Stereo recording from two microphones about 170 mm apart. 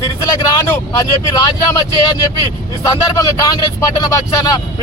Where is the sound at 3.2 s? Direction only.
25° left (ahead or behind).